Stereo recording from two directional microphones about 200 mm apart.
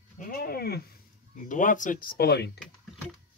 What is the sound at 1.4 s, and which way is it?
Speech, 40° left (ahead or behind).